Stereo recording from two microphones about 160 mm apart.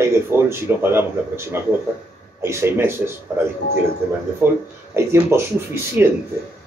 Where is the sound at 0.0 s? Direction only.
15° right (ahead or behind).